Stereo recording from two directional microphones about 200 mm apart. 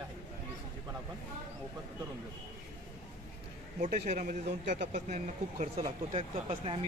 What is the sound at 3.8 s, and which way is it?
Speech, 35° right (ahead or behind).